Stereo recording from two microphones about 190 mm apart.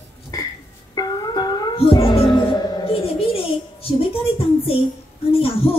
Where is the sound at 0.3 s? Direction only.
20° left (ahead or behind).